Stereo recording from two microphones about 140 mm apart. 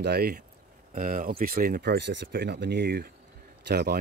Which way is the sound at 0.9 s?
75° right (ahead or behind).